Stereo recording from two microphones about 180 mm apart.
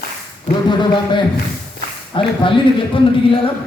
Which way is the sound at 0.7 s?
25° left (ahead or behind).